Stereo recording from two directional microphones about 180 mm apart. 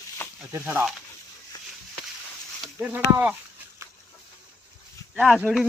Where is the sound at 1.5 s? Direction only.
20° left (ahead or behind).